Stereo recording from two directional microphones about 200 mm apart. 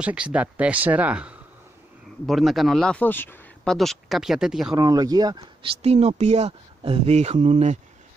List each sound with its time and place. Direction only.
0.0 s speech: 5° right (ahead or behind)
4.7 s speech: 20° right (ahead or behind); by 7.8 s 35° right (ahead or behind)